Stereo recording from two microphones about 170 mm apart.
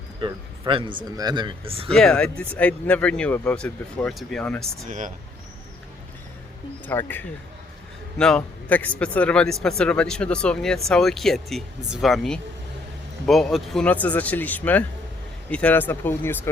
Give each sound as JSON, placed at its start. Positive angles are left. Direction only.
{"t": 0.2, "sound": "speech", "side_deg": -25}
{"t": 1.9, "sound": "a man's voice", "side_deg": 5}
{"t": 4.9, "sound": "speech", "side_deg": -50}
{"t": 6.8, "sound": "a man's voice", "side_deg": 10}